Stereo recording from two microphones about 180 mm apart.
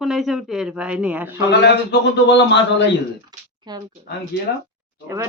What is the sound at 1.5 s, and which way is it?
A man's voice, 70° left (ahead or behind).